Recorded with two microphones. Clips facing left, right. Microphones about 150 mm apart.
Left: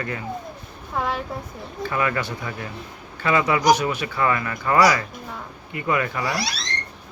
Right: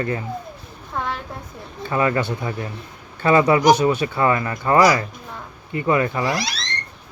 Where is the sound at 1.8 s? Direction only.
30° right (ahead or behind).